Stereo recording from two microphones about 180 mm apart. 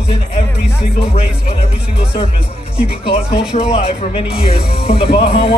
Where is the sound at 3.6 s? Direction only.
35° left (ahead or behind).